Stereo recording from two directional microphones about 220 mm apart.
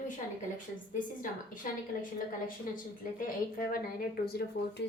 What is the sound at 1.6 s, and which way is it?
Speech, 40° left (ahead or behind).